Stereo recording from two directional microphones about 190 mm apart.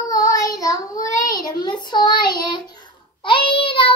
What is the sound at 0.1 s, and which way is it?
Child singing, 15° left (ahead or behind).